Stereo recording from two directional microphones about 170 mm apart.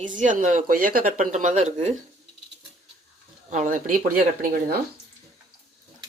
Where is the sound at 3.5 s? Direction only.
50° right (ahead or behind).